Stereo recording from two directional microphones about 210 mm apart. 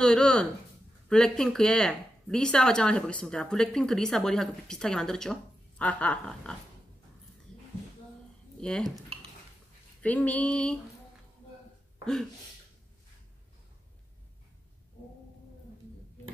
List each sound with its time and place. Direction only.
0.0 s speech: 5° left (ahead or behind)
8.5 s speech: 5° left (ahead or behind)
10.0 s speech: 5° left (ahead or behind)
12.0 s a sound: centre (ahead or behind)